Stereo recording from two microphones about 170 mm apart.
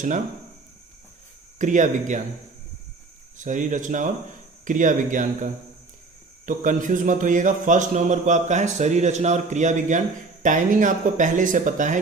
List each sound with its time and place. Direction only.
1.5 s a man's voice: 45° right (ahead or behind)
3.3 s a man's voice: 50° right (ahead or behind)